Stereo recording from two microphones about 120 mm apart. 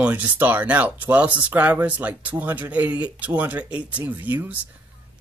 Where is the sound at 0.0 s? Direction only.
15° right (ahead or behind).